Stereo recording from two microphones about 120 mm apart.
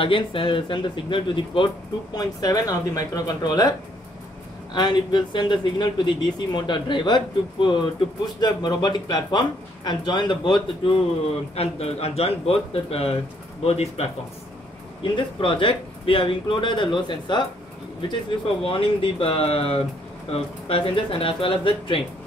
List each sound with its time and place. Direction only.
0.0 s speech: 45° left (ahead or behind)
2.1 s speech: 30° left (ahead or behind)
4.7 s speech: 35° left (ahead or behind)
11.5 s speech: 60° left (ahead or behind)
15.1 s speech: 45° left (ahead or behind)
18.6 s speech: 50° left (ahead or behind)